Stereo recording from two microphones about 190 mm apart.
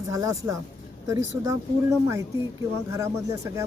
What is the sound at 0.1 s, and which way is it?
Speech, 15° right (ahead or behind).